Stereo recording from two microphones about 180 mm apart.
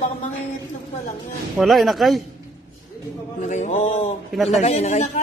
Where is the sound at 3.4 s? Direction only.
40° left (ahead or behind).